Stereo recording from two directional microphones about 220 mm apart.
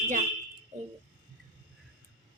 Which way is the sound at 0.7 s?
35° right (ahead or behind).